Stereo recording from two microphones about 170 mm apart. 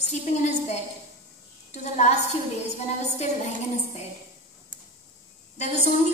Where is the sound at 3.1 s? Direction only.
40° left (ahead or behind).